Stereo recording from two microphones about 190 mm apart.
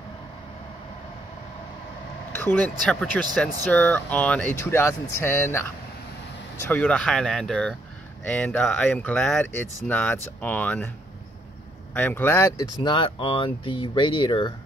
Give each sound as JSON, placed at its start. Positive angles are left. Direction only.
{"t": 2.3, "sound": "speech", "side_deg": 10}
{"t": 6.7, "sound": "speech", "side_deg": 5}
{"t": 11.9, "sound": "speech", "side_deg": 10}
{"t": 12.8, "sound": "speech", "side_deg": 25}